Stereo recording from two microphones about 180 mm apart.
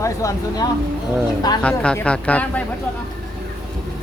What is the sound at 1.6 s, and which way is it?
Speech, 5° left (ahead or behind).